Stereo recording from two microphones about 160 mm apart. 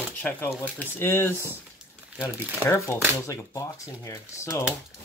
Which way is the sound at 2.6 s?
20° left (ahead or behind).